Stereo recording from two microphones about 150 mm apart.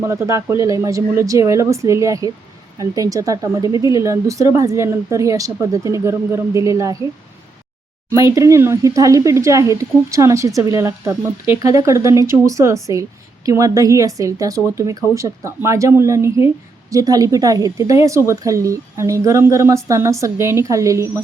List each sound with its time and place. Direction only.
0.0 s speech: 20° right (ahead or behind)
8.1 s speech: 20° right (ahead or behind)